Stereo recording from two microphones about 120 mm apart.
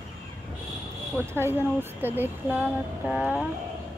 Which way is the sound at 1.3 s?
20° right (ahead or behind).